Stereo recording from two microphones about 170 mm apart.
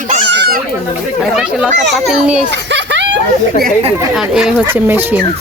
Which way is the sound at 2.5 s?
90° right.